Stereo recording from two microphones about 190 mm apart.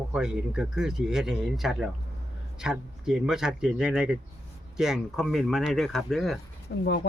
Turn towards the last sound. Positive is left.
turn(degrees=65)  # may be behind; listen again after turning